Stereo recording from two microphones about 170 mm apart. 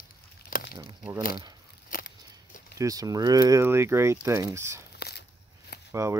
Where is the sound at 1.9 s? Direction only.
55° left (ahead or behind).